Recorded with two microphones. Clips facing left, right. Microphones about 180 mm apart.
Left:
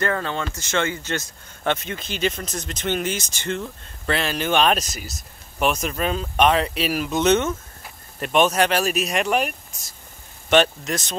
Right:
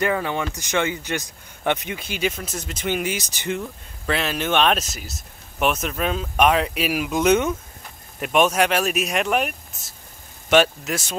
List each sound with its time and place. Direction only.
0.0 s speech: 15° right (ahead or behind)